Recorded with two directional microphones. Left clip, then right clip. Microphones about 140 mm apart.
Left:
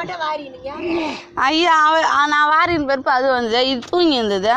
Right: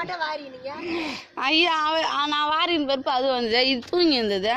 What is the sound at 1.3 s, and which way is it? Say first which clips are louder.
A woman's voice: left 6 dB; 5° left (ahead or behind).